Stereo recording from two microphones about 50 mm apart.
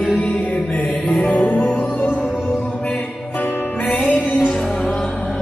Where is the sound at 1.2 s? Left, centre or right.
Left.